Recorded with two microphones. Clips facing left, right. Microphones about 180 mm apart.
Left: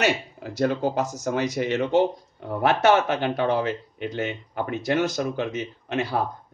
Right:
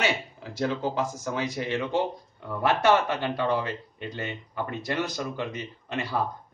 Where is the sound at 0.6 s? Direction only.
40° left (ahead or behind).